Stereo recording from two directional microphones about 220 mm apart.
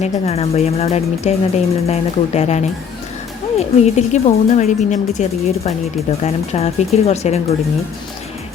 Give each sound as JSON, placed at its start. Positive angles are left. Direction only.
{"t": 0.0, "sound": "speech", "side_deg": 30}